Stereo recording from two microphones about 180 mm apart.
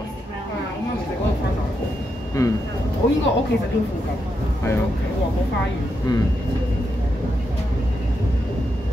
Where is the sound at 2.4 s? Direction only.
20° left (ahead or behind).